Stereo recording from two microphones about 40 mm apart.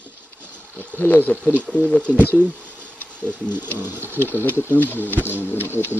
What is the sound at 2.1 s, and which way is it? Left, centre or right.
Speech, right.